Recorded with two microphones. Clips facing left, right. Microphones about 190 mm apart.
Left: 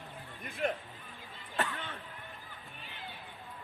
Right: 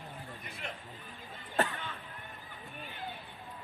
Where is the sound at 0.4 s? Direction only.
50° left (ahead or behind).